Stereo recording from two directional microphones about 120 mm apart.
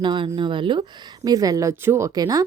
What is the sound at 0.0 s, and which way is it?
Speech, 40° right (ahead or behind).